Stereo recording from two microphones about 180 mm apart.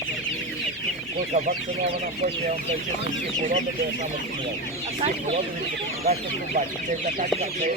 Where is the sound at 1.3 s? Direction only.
40° right (ahead or behind).